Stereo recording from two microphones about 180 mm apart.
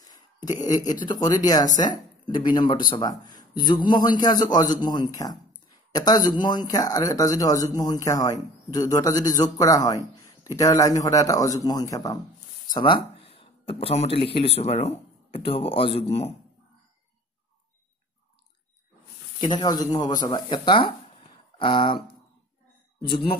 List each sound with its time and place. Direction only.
0.5 s speech: 20° left (ahead or behind)
19.4 s speech: 25° left (ahead or behind)